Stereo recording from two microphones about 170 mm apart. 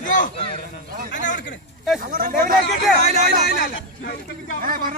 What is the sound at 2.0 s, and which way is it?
Speech, 55° right (ahead or behind).